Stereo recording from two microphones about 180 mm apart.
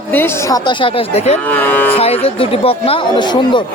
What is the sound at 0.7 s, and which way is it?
Speech, 30° left (ahead or behind).